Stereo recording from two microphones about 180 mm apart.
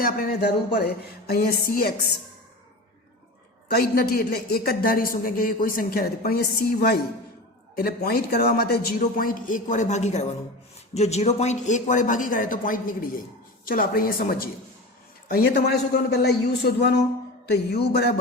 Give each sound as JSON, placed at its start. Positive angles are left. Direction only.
{"t": 0.0, "sound": "a man's voice", "side_deg": 55}
{"t": 3.7, "sound": "a man's voice", "side_deg": 60}